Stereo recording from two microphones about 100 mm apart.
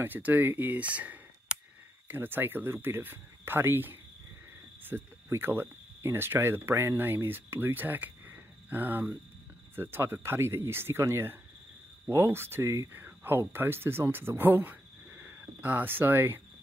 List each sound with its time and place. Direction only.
0.0 s speech: 20° right (ahead or behind)